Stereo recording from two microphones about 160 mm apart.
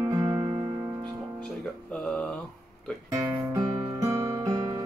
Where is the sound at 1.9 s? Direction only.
5° left (ahead or behind).